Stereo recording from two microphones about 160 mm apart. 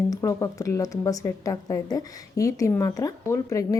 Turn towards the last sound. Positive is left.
turn(degrees=20)  # may be behind; listen again after turning